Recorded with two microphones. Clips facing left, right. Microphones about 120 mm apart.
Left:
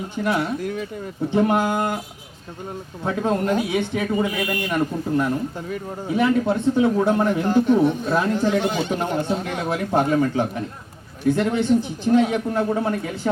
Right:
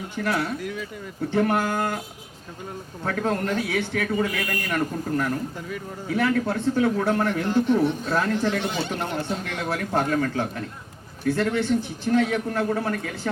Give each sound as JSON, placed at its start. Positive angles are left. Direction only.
{"t": 0.2, "sound": "speech", "side_deg": 15}
{"t": 0.6, "sound": "speech", "side_deg": 40}
{"t": 1.3, "sound": "speech", "side_deg": 15}
{"t": 3.0, "sound": "speech", "side_deg": 20}
{"t": 5.5, "sound": "speech", "side_deg": 35}
{"t": 6.1, "sound": "speech", "side_deg": 20}
{"t": 7.4, "sound": "speech", "side_deg": 45}
{"t": 8.1, "sound": "speech", "side_deg": 15}